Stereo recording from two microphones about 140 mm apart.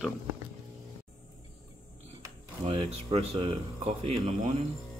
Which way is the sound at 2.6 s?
40° right (ahead or behind).